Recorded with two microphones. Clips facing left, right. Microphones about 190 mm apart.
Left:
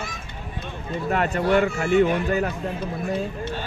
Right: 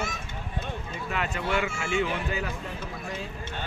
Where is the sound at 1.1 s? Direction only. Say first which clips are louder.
Left 9 dB; 40° left (ahead or behind).